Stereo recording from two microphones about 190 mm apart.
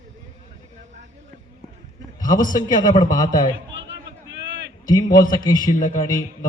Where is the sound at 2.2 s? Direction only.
45° left (ahead or behind).